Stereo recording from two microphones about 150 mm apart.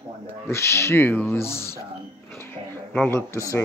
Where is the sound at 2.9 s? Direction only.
15° left (ahead or behind).